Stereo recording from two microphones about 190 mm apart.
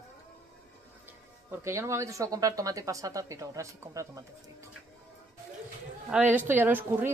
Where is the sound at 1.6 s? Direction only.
15° right (ahead or behind).